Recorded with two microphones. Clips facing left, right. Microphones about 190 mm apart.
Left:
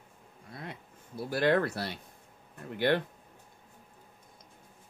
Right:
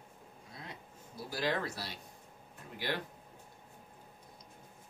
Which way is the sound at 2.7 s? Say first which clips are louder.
Left 11 dB; 60° left (ahead or behind).